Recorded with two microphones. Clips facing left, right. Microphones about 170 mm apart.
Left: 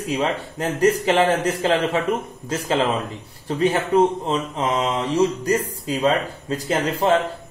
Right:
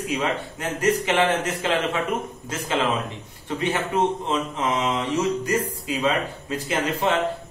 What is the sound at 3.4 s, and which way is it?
Speech, 35° left (ahead or behind).